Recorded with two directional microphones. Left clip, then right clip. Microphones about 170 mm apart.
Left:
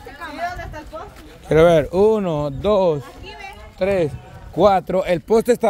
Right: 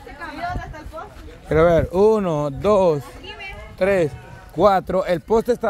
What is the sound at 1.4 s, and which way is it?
Speech, 25° left (ahead or behind).